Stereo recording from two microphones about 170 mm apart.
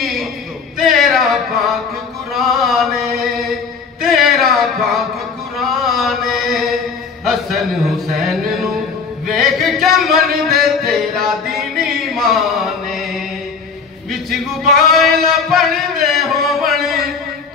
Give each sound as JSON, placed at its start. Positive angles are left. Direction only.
{"t": 0.0, "sound": "a sound", "side_deg": 0}
{"t": 0.7, "sound": "male singing", "side_deg": 0}
{"t": 2.3, "sound": "chant", "side_deg": 0}
{"t": 4.0, "sound": "a sound", "side_deg": 0}
{"t": 5.6, "sound": "chant", "side_deg": 0}
{"t": 7.2, "sound": "music", "side_deg": 0}
{"t": 9.3, "sound": "a sound", "side_deg": 0}
{"t": 14.1, "sound": "male singing", "side_deg": 0}
{"t": 15.5, "sound": "music", "side_deg": 0}